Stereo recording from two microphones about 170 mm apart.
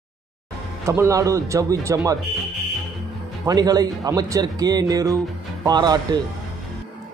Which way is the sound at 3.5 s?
20° right (ahead or behind).